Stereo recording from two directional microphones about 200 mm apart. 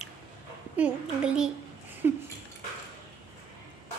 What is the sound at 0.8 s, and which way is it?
Speech, 5° right (ahead or behind).